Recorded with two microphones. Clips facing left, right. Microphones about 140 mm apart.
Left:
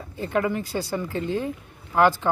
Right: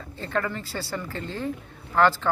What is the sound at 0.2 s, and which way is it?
A woman's voice, 15° left (ahead or behind).